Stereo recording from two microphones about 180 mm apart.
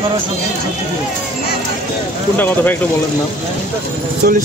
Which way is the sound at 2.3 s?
10° left (ahead or behind).